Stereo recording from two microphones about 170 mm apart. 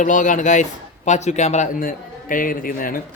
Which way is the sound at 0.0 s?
50° left (ahead or behind).